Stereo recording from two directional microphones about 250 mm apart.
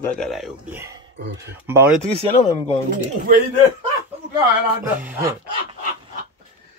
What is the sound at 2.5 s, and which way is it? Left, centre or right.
Speech, left.